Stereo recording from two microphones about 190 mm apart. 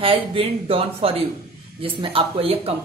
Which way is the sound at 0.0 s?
30° right (ahead or behind).